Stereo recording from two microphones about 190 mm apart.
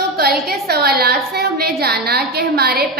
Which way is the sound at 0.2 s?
55° right (ahead or behind).